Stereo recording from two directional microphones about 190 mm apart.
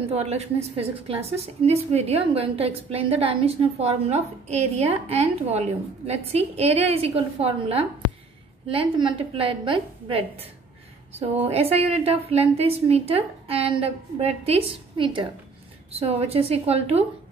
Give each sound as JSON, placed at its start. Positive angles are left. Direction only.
{"t": 0.1, "sound": "a woman's voice", "side_deg": -35}